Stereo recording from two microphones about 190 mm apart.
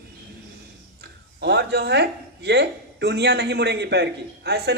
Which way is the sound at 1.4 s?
60° right (ahead or behind).